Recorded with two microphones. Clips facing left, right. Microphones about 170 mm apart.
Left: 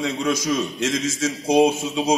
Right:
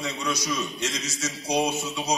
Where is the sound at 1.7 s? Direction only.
50° left (ahead or behind).